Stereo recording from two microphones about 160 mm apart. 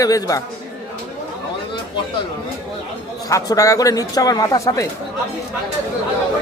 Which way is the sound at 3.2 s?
20° left (ahead or behind).